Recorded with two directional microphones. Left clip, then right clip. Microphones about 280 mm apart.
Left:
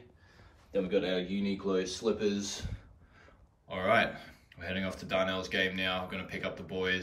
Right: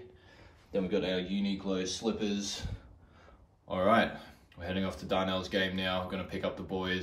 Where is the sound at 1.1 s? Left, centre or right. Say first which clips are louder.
Even; centre.